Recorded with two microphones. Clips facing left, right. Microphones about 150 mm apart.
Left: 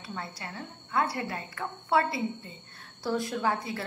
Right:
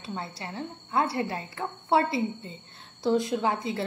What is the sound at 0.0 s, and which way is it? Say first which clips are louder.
A woman's voice: right 3 dB; 25° right (ahead or behind).